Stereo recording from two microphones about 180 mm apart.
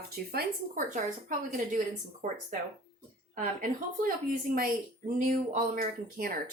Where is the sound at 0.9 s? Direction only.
45° right (ahead or behind).